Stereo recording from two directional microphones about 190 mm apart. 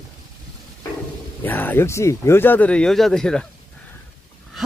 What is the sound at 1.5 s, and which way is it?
Speech, 10° left (ahead or behind).